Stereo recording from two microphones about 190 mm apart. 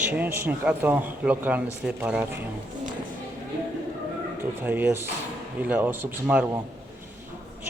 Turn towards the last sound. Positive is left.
turn(degrees=-10)  # may be behind; listen again after turning